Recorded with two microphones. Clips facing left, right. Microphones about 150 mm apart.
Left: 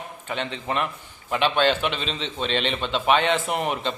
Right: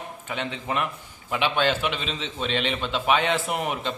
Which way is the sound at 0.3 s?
5° right (ahead or behind).